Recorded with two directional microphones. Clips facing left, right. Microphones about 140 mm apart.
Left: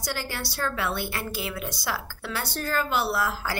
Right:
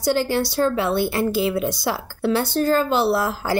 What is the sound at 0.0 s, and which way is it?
A woman's voice, 25° right (ahead or behind).